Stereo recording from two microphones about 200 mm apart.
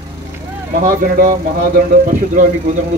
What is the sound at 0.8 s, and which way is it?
Speech, 45° right (ahead or behind).